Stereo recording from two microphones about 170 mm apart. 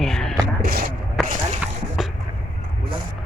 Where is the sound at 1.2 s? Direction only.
Centre (ahead or behind).